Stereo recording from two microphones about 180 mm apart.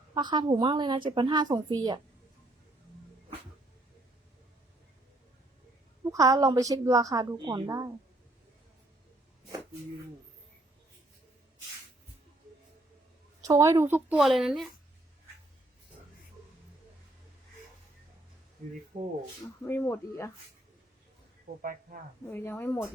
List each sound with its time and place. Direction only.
0.1 s a woman's voice: 25° right (ahead or behind)
6.0 s a woman's voice: 20° right (ahead or behind)
13.4 s a woman's voice: 15° right (ahead or behind); by 14.7 s centre (ahead or behind)
18.9 s speech: 45° right (ahead or behind)
19.6 s speech: 10° left (ahead or behind)
21.6 s speech: 50° right (ahead or behind)
22.3 s speech: 10° left (ahead or behind)